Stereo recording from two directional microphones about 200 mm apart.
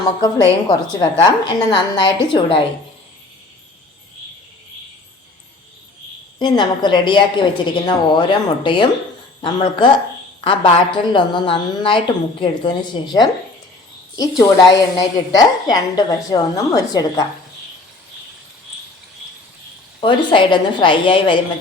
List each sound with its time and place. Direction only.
0.7 s a woman's voice: 20° left (ahead or behind)
6.4 s a woman's voice: 20° left (ahead or behind)
20.0 s a woman's voice: 25° left (ahead or behind)